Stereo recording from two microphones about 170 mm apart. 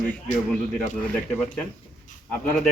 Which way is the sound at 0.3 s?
50° left (ahead or behind).